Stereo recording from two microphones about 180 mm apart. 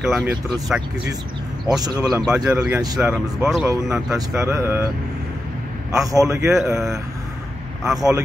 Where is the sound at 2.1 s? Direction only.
5° right (ahead or behind).